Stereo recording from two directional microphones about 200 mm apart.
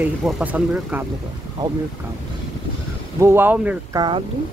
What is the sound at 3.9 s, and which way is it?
Speech, 20° right (ahead or behind).